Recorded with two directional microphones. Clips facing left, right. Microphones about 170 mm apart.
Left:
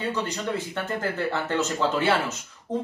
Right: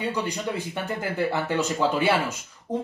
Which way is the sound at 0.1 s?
10° right (ahead or behind).